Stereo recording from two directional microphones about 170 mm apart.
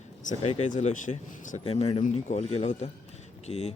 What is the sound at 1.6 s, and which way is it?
Speech, 35° left (ahead or behind).